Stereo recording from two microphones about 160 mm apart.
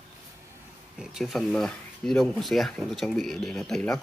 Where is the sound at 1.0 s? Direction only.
5° right (ahead or behind).